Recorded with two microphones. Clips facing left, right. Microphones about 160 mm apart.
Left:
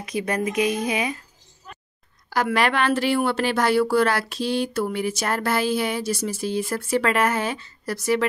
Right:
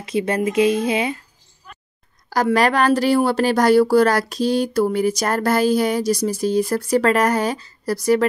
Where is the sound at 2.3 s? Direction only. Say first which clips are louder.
Right 4 dB; 40° right (ahead or behind).